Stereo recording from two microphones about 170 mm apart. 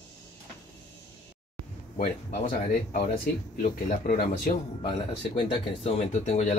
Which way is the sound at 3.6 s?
50° left (ahead or behind).